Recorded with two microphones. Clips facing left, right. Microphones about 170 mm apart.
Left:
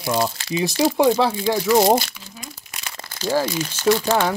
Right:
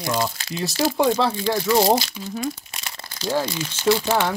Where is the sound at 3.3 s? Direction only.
10° left (ahead or behind).